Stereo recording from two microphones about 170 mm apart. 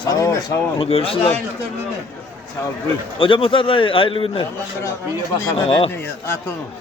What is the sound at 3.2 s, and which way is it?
Speech, 30° left (ahead or behind).